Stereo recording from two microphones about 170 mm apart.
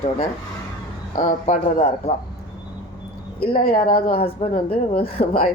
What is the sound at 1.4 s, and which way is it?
Speech, 40° left (ahead or behind).